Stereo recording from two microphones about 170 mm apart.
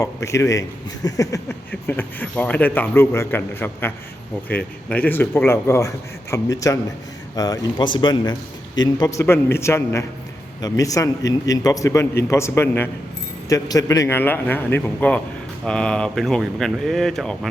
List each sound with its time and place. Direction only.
0.0 s a man's voice: 15° left (ahead or behind)